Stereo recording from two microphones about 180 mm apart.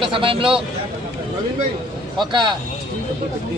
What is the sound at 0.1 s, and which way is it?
Speech, 30° right (ahead or behind).